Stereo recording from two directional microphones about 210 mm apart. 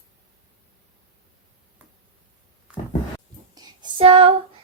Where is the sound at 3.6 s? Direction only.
25° right (ahead or behind).